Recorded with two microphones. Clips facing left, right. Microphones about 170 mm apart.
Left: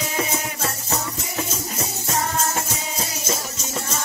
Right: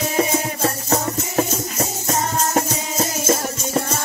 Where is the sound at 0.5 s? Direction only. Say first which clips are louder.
Right 6 dB; 35° right (ahead or behind).